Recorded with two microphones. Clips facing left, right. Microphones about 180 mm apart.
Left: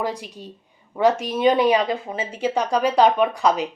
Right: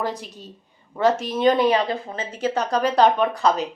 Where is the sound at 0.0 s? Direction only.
10° left (ahead or behind).